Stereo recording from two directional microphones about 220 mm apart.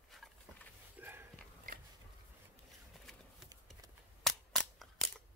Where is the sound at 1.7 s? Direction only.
40° right (ahead or behind).